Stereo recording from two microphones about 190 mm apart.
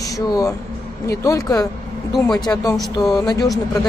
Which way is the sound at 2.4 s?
20° left (ahead or behind).